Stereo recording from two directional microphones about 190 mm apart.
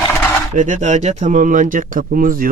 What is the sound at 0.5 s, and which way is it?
Speech, 40° right (ahead or behind).